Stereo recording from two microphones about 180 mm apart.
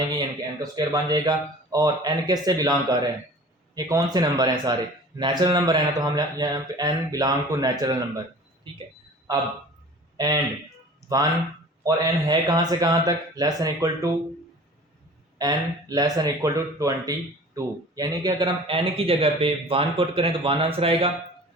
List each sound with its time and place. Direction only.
0.2 s speech: 25° right (ahead or behind)
10.2 s speech: 20° right (ahead or behind)
15.4 s speech: 20° right (ahead or behind)